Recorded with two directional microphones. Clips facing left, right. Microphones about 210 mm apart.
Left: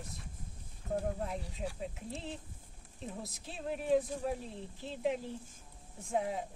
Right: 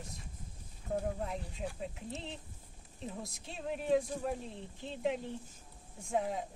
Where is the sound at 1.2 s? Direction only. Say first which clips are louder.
Even; centre (ahead or behind).